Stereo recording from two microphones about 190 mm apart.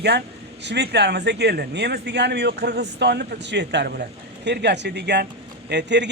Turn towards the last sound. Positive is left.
turn(degrees=-65)  # may be behind; listen again after turning